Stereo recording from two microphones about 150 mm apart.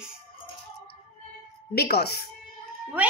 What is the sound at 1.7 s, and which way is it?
Speech, 90° left.